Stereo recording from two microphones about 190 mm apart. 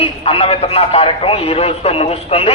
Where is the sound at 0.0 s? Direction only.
30° left (ahead or behind).